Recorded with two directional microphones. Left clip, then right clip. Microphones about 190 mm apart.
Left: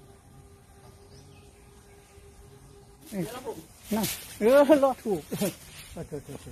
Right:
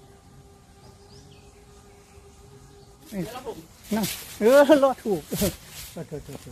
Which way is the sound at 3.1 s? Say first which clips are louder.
Right 1 dB; 5° left (ahead or behind).